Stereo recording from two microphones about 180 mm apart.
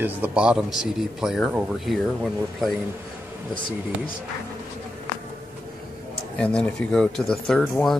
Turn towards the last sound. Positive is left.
turn(degrees=5)  # may be behind; listen again after turning